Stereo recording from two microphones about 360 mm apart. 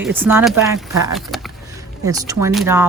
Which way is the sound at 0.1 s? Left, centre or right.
Centre.